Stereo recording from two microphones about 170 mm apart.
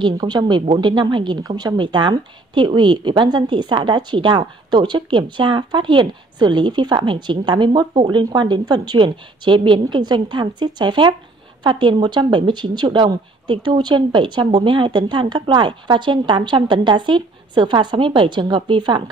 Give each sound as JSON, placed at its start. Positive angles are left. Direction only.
{"t": 0.0, "sound": "a woman's voice", "side_deg": -25}